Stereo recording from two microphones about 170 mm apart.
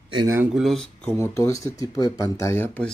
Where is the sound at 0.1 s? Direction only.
25° right (ahead or behind).